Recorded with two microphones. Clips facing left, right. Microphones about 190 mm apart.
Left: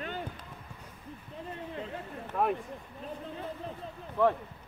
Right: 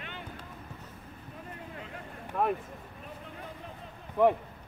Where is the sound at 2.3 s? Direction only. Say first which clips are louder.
Even; centre (ahead or behind).